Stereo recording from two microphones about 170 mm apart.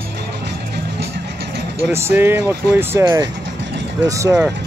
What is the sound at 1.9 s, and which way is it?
Speech, 15° right (ahead or behind).